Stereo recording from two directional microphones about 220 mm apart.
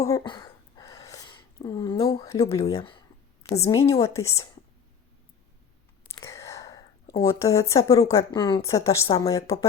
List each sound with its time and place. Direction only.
0.0 s a sound: 15° left (ahead or behind)
2.7 s speech: 20° left (ahead or behind)
6.1 s speech: 15° left (ahead or behind)